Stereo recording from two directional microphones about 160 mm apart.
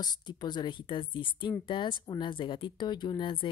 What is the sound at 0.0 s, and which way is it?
Speech, 25° left (ahead or behind).